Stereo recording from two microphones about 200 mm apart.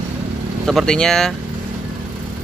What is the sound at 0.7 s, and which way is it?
Speech, 5° left (ahead or behind).